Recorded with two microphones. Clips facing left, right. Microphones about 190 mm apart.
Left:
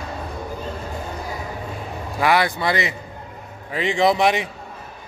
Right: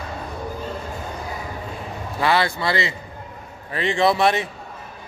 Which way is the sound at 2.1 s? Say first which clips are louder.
Left 1 dB; 15° left (ahead or behind).